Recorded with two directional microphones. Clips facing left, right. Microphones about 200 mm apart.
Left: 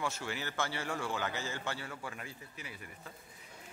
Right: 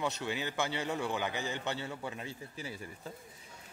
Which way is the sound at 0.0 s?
20° right (ahead or behind).